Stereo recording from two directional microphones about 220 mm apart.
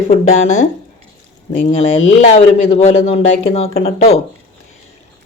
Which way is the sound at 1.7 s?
30° left (ahead or behind).